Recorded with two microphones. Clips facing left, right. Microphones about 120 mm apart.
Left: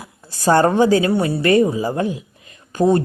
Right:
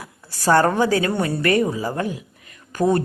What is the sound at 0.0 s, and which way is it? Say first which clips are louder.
A woman's voice: left 3 dB; 20° left (ahead or behind).